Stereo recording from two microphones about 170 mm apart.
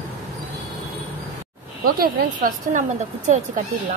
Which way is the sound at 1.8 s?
60° right (ahead or behind).